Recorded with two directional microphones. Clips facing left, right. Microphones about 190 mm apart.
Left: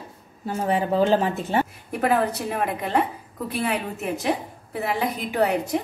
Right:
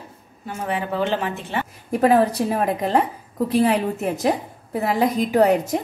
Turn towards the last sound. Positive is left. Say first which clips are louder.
# right 5 dB
turn(degrees=-40)  # may be behind; listen again after turning